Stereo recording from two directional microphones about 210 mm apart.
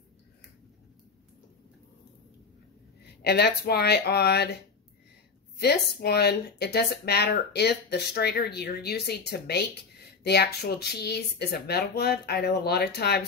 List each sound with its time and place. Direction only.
3.2 s speech: 50° left (ahead or behind)
5.6 s speech: 50° left (ahead or behind)